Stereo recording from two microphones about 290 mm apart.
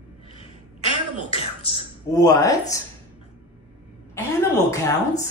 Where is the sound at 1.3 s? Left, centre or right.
Centre.